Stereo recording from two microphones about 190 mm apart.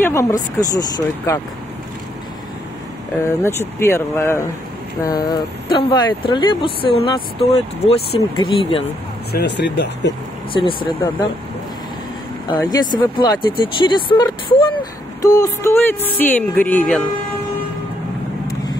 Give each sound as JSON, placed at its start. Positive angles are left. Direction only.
{"t": 0.0, "sound": "speech", "side_deg": 15}
{"t": 3.3, "sound": "speech", "side_deg": 15}
{"t": 9.3, "sound": "speech", "side_deg": 60}
{"t": 10.5, "sound": "speech", "side_deg": 25}
{"t": 12.4, "sound": "speech", "side_deg": 20}